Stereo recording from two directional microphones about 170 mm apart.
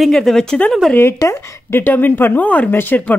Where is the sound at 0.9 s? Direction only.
15° left (ahead or behind).